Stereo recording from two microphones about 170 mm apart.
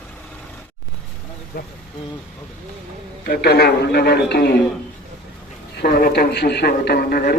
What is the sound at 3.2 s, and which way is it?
A man's voice, 65° left (ahead or behind).